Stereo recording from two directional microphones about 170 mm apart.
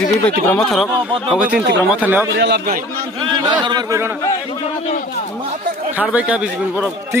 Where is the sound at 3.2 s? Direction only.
25° right (ahead or behind).